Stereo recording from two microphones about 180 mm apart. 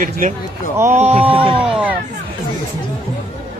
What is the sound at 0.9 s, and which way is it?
Speech, 35° right (ahead or behind).